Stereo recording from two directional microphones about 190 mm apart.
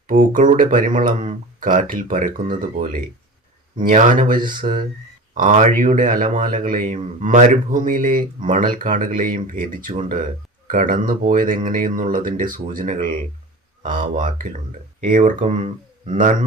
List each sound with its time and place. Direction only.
0.1 s speech: 45° right (ahead or behind)
3.8 s speech: 45° right (ahead or behind)